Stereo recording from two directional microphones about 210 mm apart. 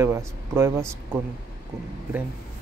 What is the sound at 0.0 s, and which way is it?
Speech, 10° right (ahead or behind).